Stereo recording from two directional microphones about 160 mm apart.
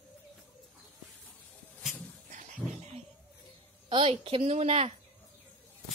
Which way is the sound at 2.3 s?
50° right (ahead or behind).